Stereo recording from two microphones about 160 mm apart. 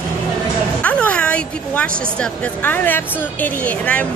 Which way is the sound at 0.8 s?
5° left (ahead or behind).